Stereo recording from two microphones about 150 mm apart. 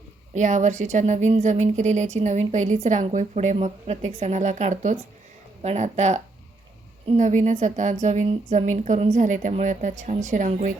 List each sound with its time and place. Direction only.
0.3 s speech: 55° right (ahead or behind)
7.2 s a woman's voice: 55° right (ahead or behind)